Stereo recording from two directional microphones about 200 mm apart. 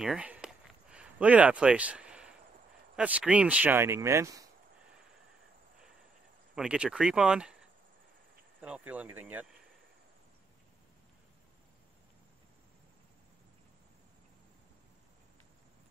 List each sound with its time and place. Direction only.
0.0 s a sound: 5° right (ahead or behind)
3.0 s speech: 5° right (ahead or behind)
6.5 s speech: 5° right (ahead or behind)
8.5 s speech: 5° right (ahead or behind)